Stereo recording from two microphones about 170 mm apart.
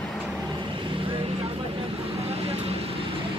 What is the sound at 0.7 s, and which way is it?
Vehicle, 30° right (ahead or behind).